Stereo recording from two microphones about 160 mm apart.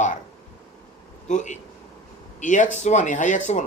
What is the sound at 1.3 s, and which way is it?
Speech, 50° left (ahead or behind).